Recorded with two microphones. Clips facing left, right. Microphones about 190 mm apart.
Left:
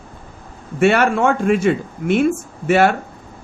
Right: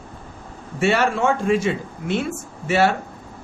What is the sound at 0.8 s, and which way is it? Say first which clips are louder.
Speech: left 4 dB; 55° left (ahead or behind).